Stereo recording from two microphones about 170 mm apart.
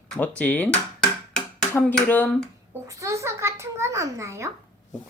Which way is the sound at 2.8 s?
20° right (ahead or behind).